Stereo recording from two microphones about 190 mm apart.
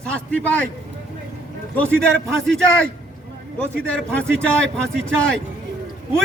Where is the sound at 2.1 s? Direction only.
5° left (ahead or behind).